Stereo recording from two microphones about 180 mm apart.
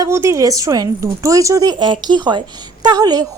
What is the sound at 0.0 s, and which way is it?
A woman's voice, 15° right (ahead or behind).